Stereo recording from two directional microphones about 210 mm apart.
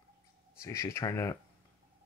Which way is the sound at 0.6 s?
15° left (ahead or behind).